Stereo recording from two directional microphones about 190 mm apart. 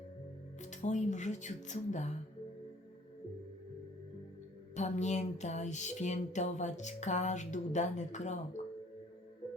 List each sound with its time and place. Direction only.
0.6 s music: 40° left (ahead or behind)
4.7 s music: 40° left (ahead or behind)